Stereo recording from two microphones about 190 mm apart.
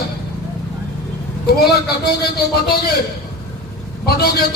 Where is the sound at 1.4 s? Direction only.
55° left (ahead or behind).